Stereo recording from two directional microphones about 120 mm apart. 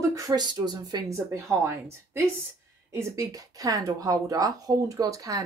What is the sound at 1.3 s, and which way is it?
Speech, 25° right (ahead or behind).